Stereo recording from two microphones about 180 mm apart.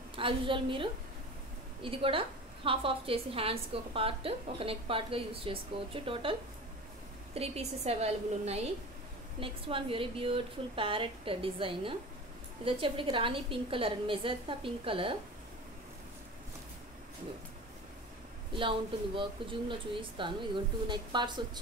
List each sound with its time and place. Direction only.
0.1 s a woman's voice: 30° right (ahead or behind)
7.3 s a woman's voice: 35° right (ahead or behind)
18.5 s a woman's voice: 30° right (ahead or behind)